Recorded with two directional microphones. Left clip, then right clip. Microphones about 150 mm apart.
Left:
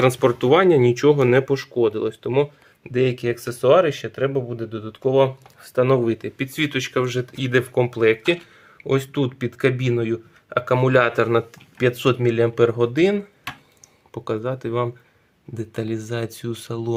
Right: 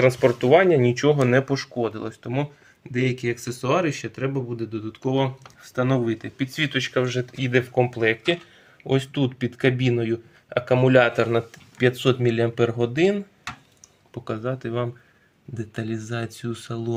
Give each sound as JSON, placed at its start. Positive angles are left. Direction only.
{"t": 0.0, "sound": "speech", "side_deg": 35}